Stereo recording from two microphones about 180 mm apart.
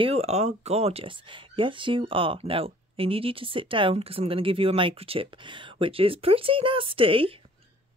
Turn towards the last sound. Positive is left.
turn(degrees=-30)  # may be behind; listen again after turning